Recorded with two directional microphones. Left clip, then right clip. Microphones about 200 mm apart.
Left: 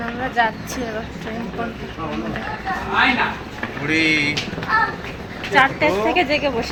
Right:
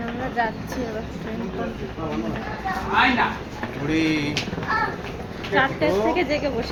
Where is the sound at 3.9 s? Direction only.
30° right (ahead or behind).